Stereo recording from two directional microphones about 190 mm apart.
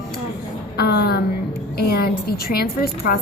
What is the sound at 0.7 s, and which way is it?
Speech, 60° left (ahead or behind).